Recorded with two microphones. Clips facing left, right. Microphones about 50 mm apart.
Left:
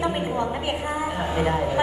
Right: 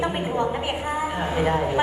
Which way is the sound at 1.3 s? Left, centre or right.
Centre.